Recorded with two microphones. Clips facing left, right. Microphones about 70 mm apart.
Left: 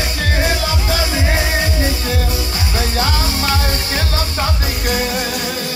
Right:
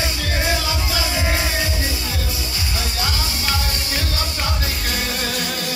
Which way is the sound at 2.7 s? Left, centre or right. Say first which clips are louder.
Left 7 dB; left.